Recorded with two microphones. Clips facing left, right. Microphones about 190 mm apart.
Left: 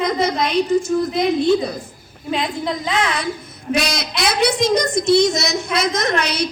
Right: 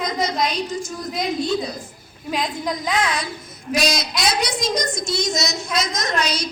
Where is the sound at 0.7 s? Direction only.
60° left (ahead or behind).